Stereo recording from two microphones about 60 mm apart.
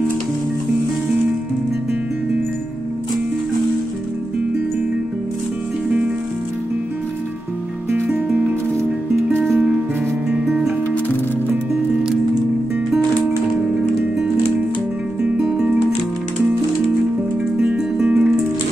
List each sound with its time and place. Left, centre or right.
15.2 s music: centre
17.6 s music: centre